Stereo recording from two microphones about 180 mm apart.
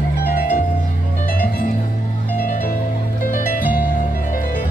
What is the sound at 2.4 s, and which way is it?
Music, 45° left (ahead or behind).